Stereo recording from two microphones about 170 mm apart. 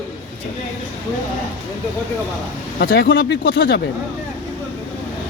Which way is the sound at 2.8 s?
75° left (ahead or behind).